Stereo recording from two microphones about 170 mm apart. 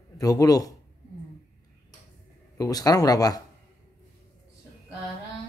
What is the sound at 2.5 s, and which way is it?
Speech, 20° left (ahead or behind).